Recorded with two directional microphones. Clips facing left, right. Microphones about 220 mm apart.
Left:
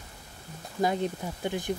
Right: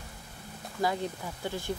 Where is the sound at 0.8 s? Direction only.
20° left (ahead or behind).